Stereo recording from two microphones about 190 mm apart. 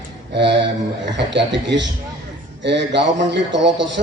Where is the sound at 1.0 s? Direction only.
70° right (ahead or behind).